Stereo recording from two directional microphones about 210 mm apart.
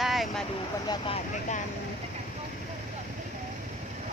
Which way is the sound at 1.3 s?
35° left (ahead or behind).